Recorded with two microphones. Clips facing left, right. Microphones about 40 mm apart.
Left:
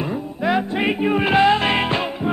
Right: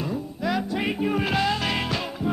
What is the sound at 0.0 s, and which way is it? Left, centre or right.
Music, left.